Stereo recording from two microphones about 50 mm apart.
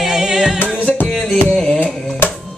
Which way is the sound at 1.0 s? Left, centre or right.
Centre.